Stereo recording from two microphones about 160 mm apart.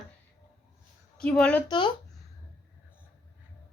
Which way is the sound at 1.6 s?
30° left (ahead or behind).